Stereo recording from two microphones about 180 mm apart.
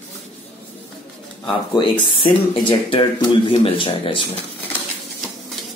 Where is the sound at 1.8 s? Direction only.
25° left (ahead or behind).